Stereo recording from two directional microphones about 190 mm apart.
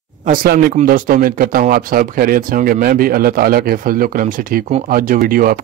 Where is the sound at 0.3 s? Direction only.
50° right (ahead or behind).